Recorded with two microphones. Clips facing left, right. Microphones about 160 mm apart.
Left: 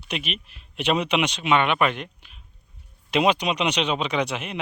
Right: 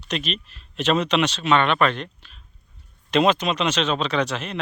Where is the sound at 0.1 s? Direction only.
10° left (ahead or behind).